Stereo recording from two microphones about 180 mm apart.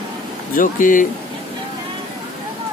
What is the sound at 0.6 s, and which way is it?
Speech, 50° left (ahead or behind).